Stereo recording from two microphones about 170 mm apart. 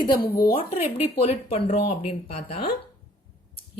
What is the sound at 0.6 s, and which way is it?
Speech, 35° left (ahead or behind).